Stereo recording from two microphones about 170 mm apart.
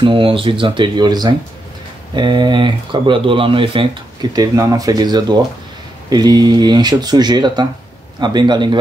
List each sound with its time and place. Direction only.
0.0 s speech: 30° right (ahead or behind)